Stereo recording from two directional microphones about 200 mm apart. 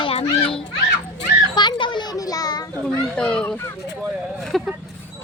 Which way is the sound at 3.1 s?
5° left (ahead or behind).